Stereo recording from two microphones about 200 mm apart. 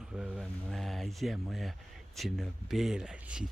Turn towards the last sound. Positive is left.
turn(degrees=-5)  # may be behind; listen again after turning